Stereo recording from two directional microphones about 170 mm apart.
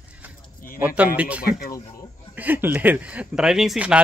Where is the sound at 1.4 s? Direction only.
55° left (ahead or behind).